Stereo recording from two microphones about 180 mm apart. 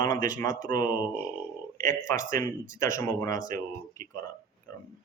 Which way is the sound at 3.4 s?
50° right (ahead or behind).